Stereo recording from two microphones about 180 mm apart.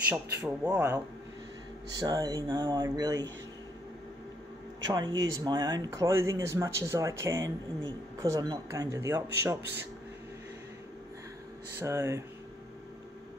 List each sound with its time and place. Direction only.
0.1 s speech: 10° right (ahead or behind)
4.8 s speech: 20° right (ahead or behind)
11.8 s speech: 15° right (ahead or behind)